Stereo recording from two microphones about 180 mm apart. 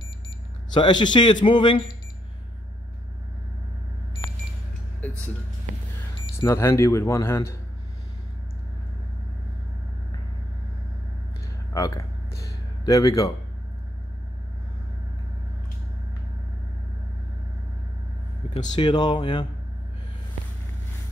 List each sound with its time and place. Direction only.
0.7 s speech: 25° left (ahead or behind)
6.3 s speech: 15° left (ahead or behind)
11.7 s speech: 15° left (ahead or behind)
12.4 s a sound: 20° left (ahead or behind)
18.5 s speech: 30° left (ahead or behind)